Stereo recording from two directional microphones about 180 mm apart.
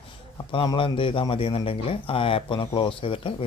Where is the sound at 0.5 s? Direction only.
30° left (ahead or behind).